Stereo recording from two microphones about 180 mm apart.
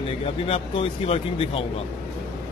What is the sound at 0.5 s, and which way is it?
A man's voice, 30° left (ahead or behind).